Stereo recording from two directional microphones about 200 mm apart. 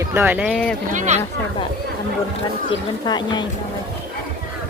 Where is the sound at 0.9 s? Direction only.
35° right (ahead or behind).